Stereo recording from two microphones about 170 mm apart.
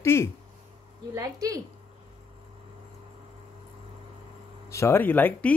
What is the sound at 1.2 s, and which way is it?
Speech, 20° right (ahead or behind).